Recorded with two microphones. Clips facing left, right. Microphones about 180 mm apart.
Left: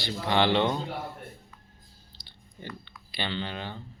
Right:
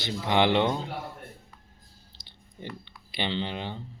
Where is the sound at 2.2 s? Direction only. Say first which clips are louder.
Right 3 dB; 20° right (ahead or behind).